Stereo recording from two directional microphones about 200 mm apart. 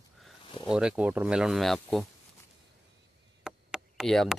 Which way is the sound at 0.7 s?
5° right (ahead or behind).